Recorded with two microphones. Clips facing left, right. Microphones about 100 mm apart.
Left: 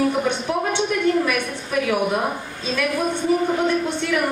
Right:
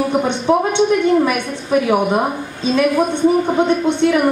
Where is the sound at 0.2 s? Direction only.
25° right (ahead or behind).